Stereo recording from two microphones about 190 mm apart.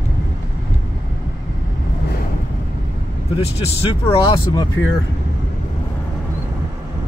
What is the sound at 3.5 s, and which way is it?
Speech, 30° left (ahead or behind).